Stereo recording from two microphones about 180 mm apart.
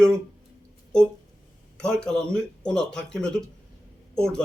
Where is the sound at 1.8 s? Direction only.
5° left (ahead or behind).